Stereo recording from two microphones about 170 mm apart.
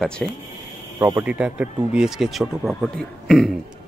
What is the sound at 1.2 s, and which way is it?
Speech, 10° right (ahead or behind).